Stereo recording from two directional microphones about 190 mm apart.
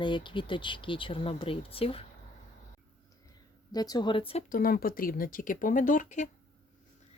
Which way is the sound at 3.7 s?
20° left (ahead or behind).